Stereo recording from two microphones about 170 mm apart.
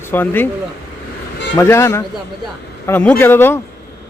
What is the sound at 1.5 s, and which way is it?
Speech, 15° left (ahead or behind).